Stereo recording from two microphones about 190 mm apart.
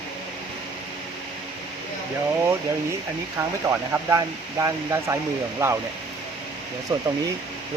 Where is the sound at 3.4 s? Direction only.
10° right (ahead or behind).